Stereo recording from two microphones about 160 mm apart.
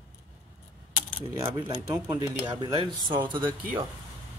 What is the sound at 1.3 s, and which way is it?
Speech, 25° right (ahead or behind).